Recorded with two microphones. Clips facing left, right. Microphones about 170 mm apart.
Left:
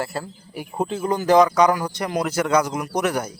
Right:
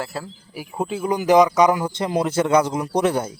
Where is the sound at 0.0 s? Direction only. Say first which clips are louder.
Left 2 dB; centre (ahead or behind).